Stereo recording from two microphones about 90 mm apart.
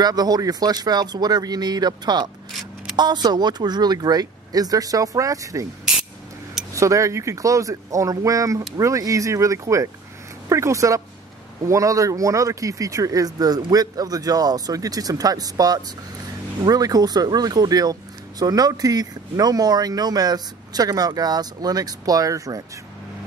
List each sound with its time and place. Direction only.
0.0 s speech: 45° right (ahead or behind)
6.7 s speech: 35° right (ahead or behind)